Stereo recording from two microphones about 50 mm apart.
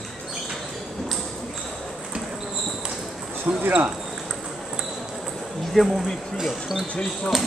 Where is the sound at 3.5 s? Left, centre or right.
Right.